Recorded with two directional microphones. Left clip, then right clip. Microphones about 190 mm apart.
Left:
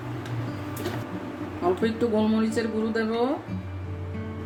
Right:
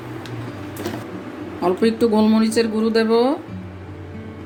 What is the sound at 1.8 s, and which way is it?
A woman's voice, 45° right (ahead or behind).